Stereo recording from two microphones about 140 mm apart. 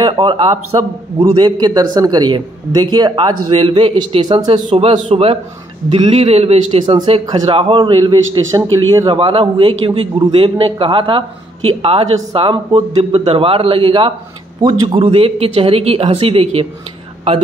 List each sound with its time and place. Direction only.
0.0 s a man's voice: 35° right (ahead or behind)
6.9 s a man's voice: 35° right (ahead or behind)
8.5 s a man's voice: 25° right (ahead or behind); by 14.1 s 40° right (ahead or behind)
14.6 s speech: 30° right (ahead or behind)